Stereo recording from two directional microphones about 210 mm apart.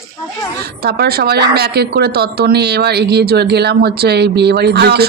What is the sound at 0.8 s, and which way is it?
A woman's voice, 50° right (ahead or behind).